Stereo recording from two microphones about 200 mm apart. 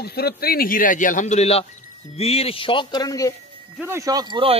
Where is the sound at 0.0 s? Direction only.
50° left (ahead or behind); by 3.3 s 15° left (ahead or behind).